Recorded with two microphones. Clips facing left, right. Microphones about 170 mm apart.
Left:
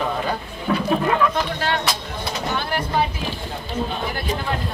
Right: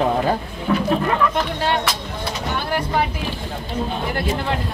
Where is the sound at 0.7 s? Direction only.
Centre (ahead or behind).